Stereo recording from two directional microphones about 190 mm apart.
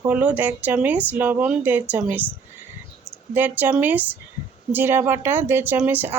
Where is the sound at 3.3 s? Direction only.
10° right (ahead or behind).